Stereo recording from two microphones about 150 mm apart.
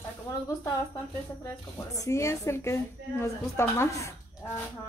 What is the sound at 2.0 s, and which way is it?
Speech, 20° left (ahead or behind).